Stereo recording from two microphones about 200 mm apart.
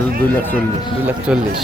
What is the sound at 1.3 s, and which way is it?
Speech, 5° right (ahead or behind).